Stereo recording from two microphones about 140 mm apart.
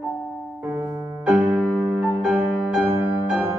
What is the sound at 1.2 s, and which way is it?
Music, 5° right (ahead or behind).